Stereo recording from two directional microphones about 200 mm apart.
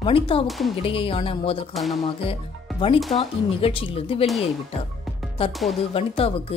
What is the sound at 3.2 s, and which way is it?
Speech, 30° left (ahead or behind).